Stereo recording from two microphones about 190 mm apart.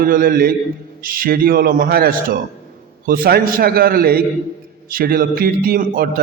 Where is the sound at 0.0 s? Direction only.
50° right (ahead or behind).